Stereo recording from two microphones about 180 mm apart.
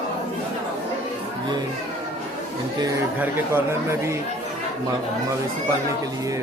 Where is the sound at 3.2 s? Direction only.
15° right (ahead or behind).